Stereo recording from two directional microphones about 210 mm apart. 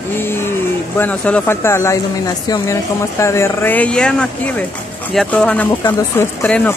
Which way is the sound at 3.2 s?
15° left (ahead or behind).